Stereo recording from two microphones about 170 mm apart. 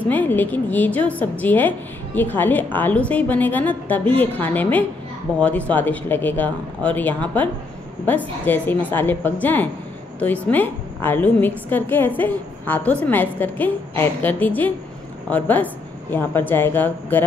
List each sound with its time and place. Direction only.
0.1 s a woman's voice: 10° left (ahead or behind)